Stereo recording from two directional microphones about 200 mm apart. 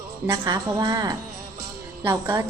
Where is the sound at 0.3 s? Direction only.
15° right (ahead or behind).